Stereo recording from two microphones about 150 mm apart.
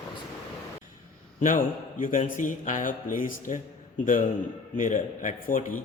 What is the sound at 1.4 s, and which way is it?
A man's voice, 60° left (ahead or behind).